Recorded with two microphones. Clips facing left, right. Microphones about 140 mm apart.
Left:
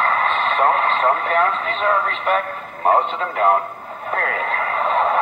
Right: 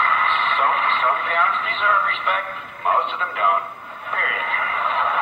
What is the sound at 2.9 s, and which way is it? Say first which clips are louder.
Speech: left 4 dB; 40° left (ahead or behind).